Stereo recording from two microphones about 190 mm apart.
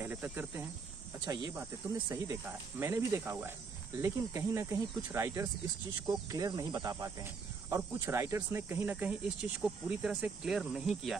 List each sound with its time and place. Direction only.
0.0 s speech: 10° right (ahead or behind)
1.2 s speech: 20° right (ahead or behind); by 11.1 s centre (ahead or behind)